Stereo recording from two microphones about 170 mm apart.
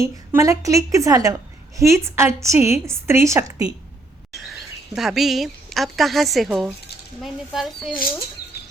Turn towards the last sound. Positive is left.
turn(degrees=0)  # may be behind; listen again after turning